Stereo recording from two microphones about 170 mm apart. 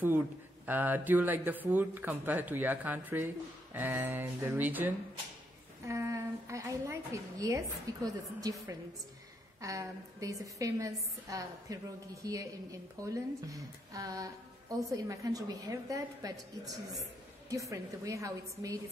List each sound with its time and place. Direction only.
0.7 s a woman's voice: 10° right (ahead or behind)